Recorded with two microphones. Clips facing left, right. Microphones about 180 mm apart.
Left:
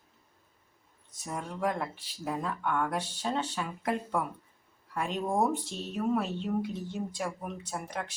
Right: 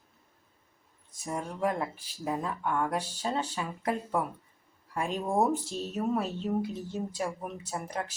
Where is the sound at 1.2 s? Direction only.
5° right (ahead or behind).